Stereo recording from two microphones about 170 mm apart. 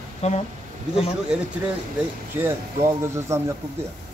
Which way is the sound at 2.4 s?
15° right (ahead or behind).